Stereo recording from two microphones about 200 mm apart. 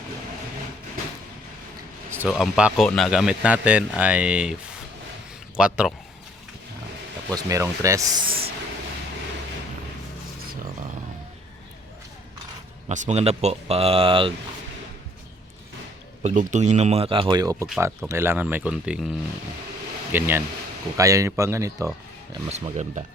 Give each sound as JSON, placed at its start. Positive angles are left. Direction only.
{"t": 2.0, "sound": "speech", "side_deg": -10}
{"t": 5.5, "sound": "speech", "side_deg": -5}
{"t": 7.3, "sound": "speech", "side_deg": -15}
{"t": 8.3, "sound": "a sound", "side_deg": -50}
{"t": 12.9, "sound": "speech", "side_deg": -35}
{"t": 16.2, "sound": "speech", "side_deg": -40}
{"t": 17.7, "sound": "speech", "side_deg": -5}
{"t": 20.1, "sound": "speech", "side_deg": -10}
{"t": 22.4, "sound": "speech", "side_deg": -35}